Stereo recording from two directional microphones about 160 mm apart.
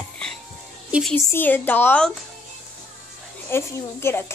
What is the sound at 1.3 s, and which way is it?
Speech, 10° left (ahead or behind).